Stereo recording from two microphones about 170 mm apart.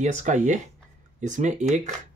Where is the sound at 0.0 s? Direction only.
45° right (ahead or behind).